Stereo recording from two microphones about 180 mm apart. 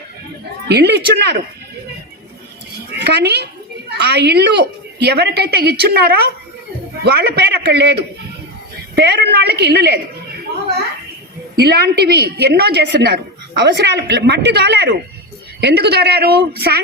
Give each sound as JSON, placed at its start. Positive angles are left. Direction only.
{"t": 0.7, "sound": "a woman's voice", "side_deg": -65}
{"t": 3.0, "sound": "a woman's voice", "side_deg": -65}
{"t": 9.0, "sound": "a woman's voice", "side_deg": -65}
{"t": 11.5, "sound": "a woman's voice", "side_deg": -65}